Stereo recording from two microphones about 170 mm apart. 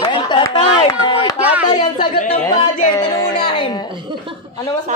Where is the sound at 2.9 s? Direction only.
25° left (ahead or behind).